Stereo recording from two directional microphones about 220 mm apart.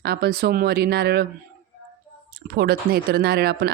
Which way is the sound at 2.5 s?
45° right (ahead or behind).